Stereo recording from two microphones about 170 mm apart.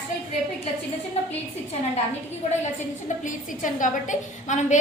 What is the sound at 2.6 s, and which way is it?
A woman's voice, 45° left (ahead or behind).